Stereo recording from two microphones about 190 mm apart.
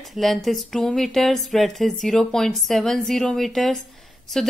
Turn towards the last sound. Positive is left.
turn(degrees=0)  # may be behind; listen again after turning